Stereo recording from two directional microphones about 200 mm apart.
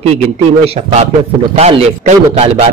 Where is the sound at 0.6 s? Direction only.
30° right (ahead or behind).